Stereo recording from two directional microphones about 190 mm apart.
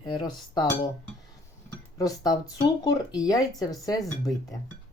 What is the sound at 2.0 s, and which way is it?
Speech, 20° left (ahead or behind).